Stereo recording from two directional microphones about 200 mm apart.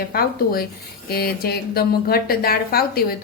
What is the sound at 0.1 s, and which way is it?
A woman's voice, 50° left (ahead or behind).